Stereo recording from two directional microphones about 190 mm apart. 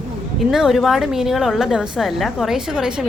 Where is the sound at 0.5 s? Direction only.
Centre (ahead or behind).